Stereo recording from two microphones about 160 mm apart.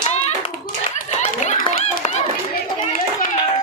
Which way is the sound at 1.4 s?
45° left (ahead or behind).